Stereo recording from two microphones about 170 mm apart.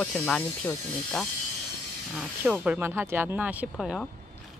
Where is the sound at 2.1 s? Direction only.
5° right (ahead or behind).